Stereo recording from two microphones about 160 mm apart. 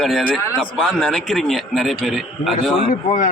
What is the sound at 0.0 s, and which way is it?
A man's voice, centre (ahead or behind).